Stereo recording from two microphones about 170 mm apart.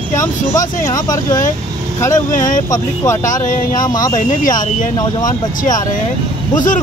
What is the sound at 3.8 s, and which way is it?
Speech, 25° left (ahead or behind).